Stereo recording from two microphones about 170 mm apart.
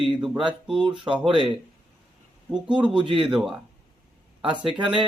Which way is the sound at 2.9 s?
30° right (ahead or behind).